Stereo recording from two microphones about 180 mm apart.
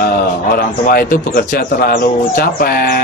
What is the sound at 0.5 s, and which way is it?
Speech, 55° left (ahead or behind).